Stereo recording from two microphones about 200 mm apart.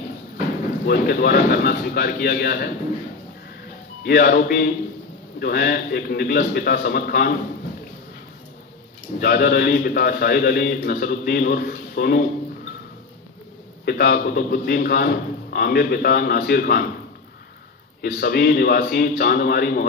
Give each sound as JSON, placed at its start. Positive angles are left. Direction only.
{"t": 0.8, "sound": "a man's voice", "side_deg": 50}
{"t": 4.0, "sound": "a man's voice", "side_deg": 50}
{"t": 9.2, "sound": "a man's voice", "side_deg": 50}
{"t": 13.8, "sound": "a man's voice", "side_deg": 50}
{"t": 18.0, "sound": "a man's voice", "side_deg": 50}